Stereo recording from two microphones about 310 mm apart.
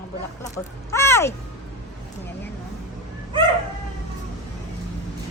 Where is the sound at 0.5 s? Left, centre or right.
Centre.